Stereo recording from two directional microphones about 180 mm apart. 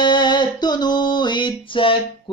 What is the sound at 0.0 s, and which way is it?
Music, 25° left (ahead or behind).